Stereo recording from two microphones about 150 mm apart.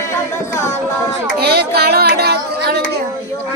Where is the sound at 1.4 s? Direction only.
90° right.